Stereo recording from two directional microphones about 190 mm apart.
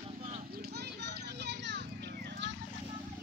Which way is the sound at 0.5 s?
55° right (ahead or behind).